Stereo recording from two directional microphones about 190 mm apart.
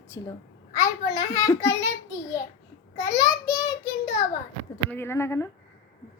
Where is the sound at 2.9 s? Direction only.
20° left (ahead or behind).